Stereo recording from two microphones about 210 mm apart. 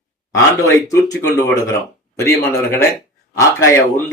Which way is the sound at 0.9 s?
15° left (ahead or behind).